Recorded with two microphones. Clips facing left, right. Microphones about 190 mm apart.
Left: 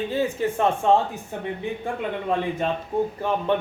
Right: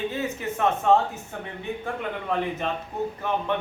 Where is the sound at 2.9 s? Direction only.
45° left (ahead or behind).